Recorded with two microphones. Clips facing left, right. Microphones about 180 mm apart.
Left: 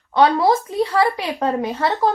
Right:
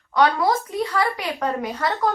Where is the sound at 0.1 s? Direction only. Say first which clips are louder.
Left 4 dB; 30° left (ahead or behind).